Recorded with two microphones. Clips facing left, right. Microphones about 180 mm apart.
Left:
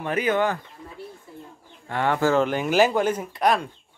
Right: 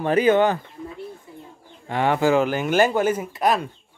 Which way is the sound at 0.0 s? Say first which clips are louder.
Right 6 dB; 30° right (ahead or behind).